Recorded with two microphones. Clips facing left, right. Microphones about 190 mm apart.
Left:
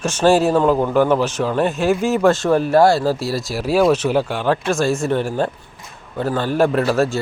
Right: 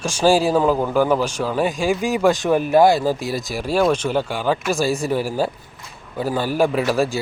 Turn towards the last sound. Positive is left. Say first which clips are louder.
# left 2 dB
turn(degrees=0)  # may be behind; listen again after turning